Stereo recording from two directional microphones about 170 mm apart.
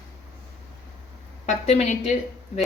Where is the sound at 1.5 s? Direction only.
40° left (ahead or behind).